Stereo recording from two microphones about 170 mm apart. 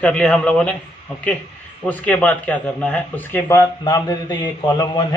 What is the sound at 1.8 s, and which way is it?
Speech, 10° left (ahead or behind).